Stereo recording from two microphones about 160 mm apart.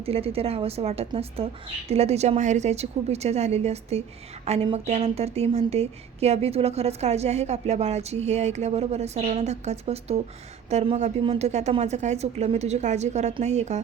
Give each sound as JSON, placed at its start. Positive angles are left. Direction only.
{"t": 0.0, "sound": "a woman's voice", "side_deg": -40}